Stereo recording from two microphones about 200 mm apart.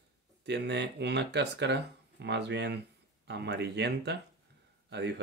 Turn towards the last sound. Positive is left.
turn(degrees=-60)  # may be behind; listen again after turning